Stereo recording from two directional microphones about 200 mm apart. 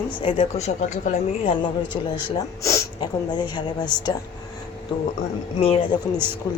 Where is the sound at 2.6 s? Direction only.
20° left (ahead or behind).